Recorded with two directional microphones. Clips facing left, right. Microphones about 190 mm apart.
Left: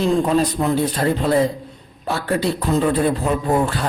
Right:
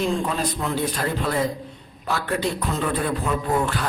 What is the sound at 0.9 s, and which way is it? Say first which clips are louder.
A man's voice: left 7 dB; 30° left (ahead or behind).